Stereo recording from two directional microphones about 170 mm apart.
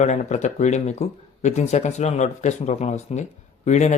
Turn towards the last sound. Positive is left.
turn(degrees=45)  # may be behind; listen again after turning